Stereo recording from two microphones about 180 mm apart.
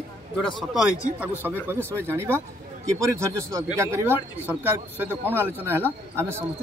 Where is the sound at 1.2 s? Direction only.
10° right (ahead or behind).